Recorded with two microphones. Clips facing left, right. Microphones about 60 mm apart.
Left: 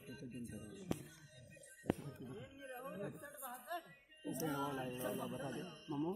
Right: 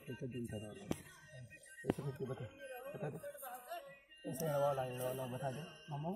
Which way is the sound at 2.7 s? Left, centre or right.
Right.